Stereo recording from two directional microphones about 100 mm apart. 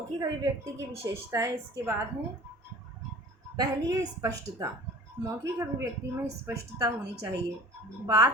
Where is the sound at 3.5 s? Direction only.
40° right (ahead or behind).